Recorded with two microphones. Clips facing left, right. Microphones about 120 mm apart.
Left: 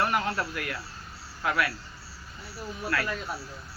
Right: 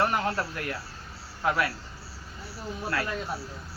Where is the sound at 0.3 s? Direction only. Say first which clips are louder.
Right 1 dB; 25° right (ahead or behind).